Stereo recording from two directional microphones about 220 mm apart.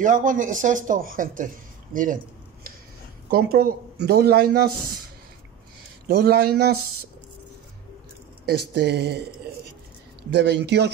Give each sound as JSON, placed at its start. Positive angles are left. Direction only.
{"t": 0.0, "sound": "speech", "side_deg": -35}
{"t": 3.3, "sound": "speech", "side_deg": -45}
{"t": 6.0, "sound": "speech", "side_deg": -45}
{"t": 8.5, "sound": "speech", "side_deg": -45}
{"t": 10.3, "sound": "speech", "side_deg": -50}